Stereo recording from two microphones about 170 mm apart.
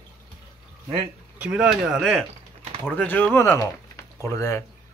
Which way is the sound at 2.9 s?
10° left (ahead or behind).